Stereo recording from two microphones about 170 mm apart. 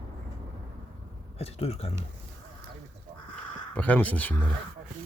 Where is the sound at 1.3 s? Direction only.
35° left (ahead or behind).